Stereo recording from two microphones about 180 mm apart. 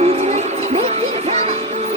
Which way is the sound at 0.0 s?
35° right (ahead or behind).